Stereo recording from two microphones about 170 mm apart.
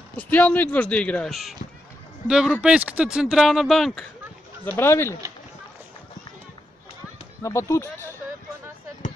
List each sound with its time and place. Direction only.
0.1 s speech: 10° left (ahead or behind)
4.7 s speech: 15° left (ahead or behind)
7.4 s speech: 15° left (ahead or behind)